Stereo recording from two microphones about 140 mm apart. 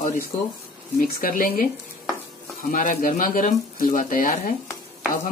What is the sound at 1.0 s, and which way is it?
Speech, 80° left.